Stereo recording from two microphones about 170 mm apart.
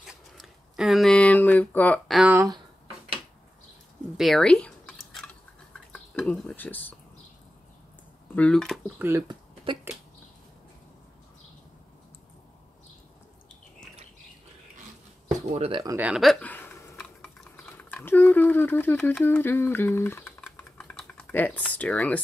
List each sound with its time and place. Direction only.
0.0 s a sound: 5° right (ahead or behind)
2.3 s a sound: 20° right (ahead or behind)
4.2 s chewing: centre (ahead or behind)
8.4 s speech: 5° left (ahead or behind)
8.9 s speech: 15° right (ahead or behind)
15.3 s speech: 40° right (ahead or behind)
16.0 s a sound: 5° right (ahead or behind); by 16.9 s 10° left (ahead or behind)
16.9 s typing: 5° left (ahead or behind)
19.2 s speech: 10° left (ahead or behind)
20.5 s computer keyboard: 10° left (ahead or behind)